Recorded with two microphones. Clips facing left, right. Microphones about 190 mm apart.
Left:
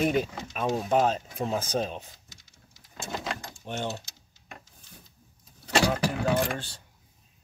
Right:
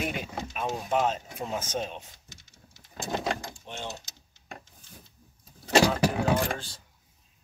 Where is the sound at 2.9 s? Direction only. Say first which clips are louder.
Right 4 dB; 25° right (ahead or behind).